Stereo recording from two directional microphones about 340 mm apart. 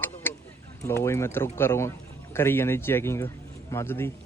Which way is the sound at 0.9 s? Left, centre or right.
Centre.